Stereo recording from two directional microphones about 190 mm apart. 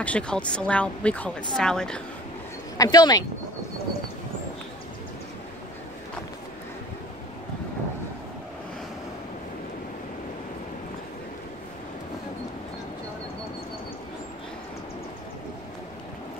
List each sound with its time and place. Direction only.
0.0 s a woman's voice: 5° left (ahead or behind)
2.8 s speech: 20° left (ahead or behind)